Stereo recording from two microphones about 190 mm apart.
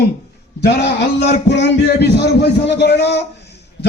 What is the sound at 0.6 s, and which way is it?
A man's voice, 60° left (ahead or behind).